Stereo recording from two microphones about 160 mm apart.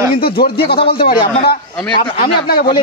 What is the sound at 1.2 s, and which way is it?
Speech, 35° left (ahead or behind).